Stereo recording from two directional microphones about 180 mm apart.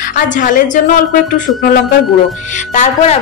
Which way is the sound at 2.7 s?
40° left (ahead or behind).